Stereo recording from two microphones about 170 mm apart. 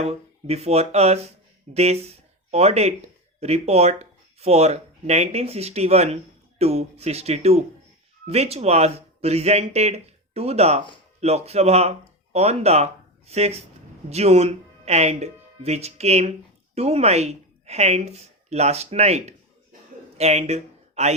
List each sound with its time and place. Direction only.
0.0 s a woman's voice: 40° right (ahead or behind)